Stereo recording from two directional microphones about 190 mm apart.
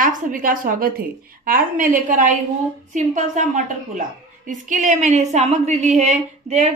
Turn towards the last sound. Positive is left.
turn(degrees=-35)  # may be behind; listen again after turning